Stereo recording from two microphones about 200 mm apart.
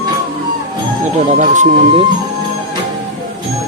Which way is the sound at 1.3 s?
40° right (ahead or behind).